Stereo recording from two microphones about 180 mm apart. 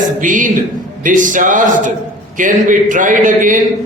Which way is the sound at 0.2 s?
45° right (ahead or behind).